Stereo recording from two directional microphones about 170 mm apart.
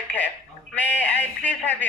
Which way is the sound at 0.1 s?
10° left (ahead or behind).